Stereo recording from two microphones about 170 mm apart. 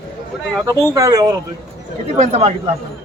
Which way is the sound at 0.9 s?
20° right (ahead or behind).